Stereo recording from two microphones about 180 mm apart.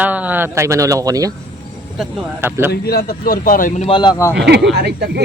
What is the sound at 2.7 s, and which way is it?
A man's voice, 60° left (ahead or behind).